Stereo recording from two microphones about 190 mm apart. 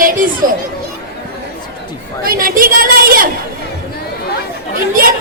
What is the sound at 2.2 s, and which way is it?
A woman's voice, 50° right (ahead or behind).